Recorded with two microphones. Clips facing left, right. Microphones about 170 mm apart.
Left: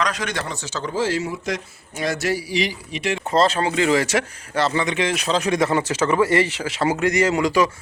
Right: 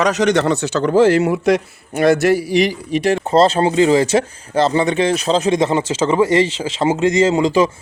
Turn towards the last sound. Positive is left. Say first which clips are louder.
# right 5 dB
turn(degrees=-25)  # may be behind; listen again after turning